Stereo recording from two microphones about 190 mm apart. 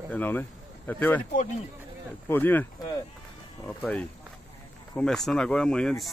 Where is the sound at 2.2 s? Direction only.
10° left (ahead or behind).